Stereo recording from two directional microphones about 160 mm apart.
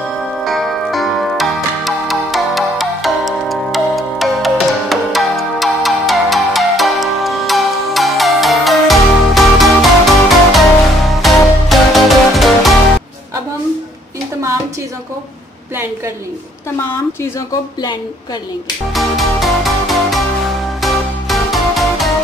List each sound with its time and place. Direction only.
0.4 s music: centre (ahead or behind)
16.7 s a woman's voice: 15° left (ahead or behind)
18.9 s music: centre (ahead or behind)